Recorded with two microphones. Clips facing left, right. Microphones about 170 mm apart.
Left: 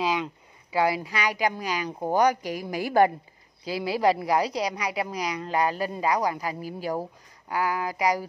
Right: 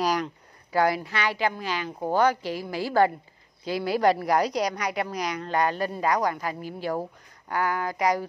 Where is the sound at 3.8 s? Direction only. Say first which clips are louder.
Right 1 dB; 5° left (ahead or behind).